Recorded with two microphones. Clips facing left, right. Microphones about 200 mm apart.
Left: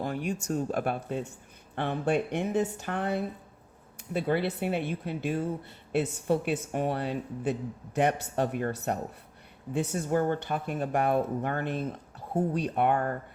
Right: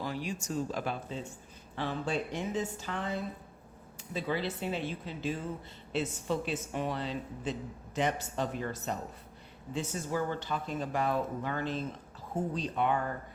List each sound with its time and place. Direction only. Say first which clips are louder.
0.0 s speech: left 5 dB; 55° left (ahead or behind)